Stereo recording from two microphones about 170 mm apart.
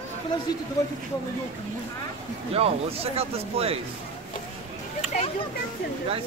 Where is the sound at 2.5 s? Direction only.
35° right (ahead or behind).